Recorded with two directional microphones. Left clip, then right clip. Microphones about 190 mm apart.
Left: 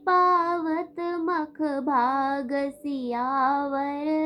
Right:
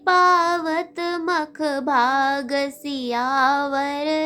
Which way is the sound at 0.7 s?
40° right (ahead or behind).